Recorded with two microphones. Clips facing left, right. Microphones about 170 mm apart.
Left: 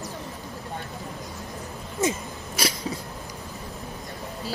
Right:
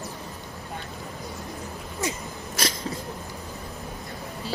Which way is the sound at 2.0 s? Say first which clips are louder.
Left 5 dB; 20° left (ahead or behind).